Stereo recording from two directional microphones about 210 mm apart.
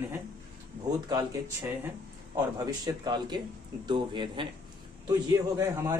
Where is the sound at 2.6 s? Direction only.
20° right (ahead or behind).